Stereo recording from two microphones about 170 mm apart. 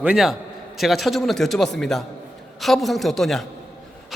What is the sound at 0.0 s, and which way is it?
A man's voice, 5° right (ahead or behind).